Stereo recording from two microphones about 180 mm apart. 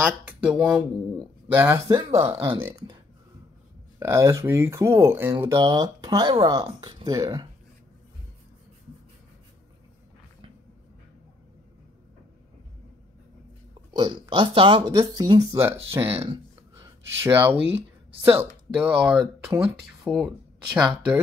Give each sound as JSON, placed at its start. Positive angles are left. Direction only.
{"t": 0.0, "sound": "speech", "side_deg": -5}
{"t": 4.0, "sound": "speech", "side_deg": -15}
{"t": 13.9, "sound": "speech", "side_deg": -25}